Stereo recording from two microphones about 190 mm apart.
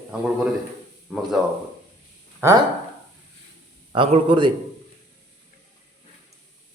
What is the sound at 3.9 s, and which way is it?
Speech, 25° right (ahead or behind).